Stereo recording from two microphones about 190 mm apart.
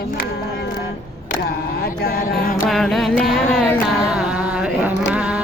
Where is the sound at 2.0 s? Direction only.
50° left (ahead or behind).